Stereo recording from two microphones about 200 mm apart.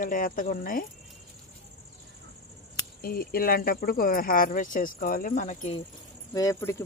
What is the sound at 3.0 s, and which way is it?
Speech, 45° left (ahead or behind).